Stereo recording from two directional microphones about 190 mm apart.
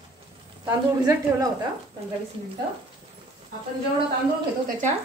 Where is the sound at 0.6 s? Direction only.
15° right (ahead or behind).